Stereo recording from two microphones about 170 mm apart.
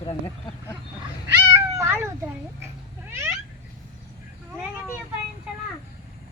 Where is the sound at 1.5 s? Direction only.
15° right (ahead or behind).